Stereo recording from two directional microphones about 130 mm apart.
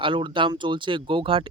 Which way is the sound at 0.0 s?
40° right (ahead or behind).